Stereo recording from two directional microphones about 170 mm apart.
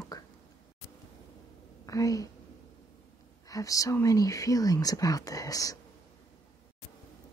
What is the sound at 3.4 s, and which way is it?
Speech, 20° left (ahead or behind).